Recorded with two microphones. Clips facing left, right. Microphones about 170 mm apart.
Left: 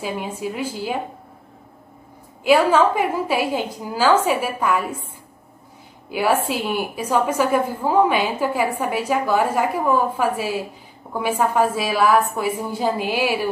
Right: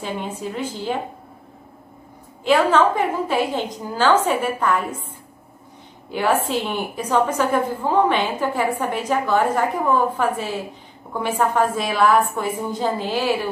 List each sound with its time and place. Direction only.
0.4 s a woman's voice: 10° left (ahead or behind)
2.4 s a woman's voice: 10° left (ahead or behind)
6.0 s a woman's voice: 10° left (ahead or behind)